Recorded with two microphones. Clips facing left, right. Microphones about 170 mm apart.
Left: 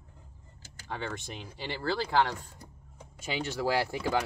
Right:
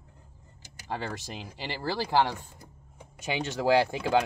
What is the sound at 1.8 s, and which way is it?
Speech, 15° right (ahead or behind).